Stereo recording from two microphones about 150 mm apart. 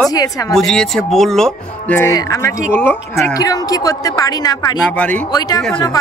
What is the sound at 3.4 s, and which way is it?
A woman's voice, 25° left (ahead or behind).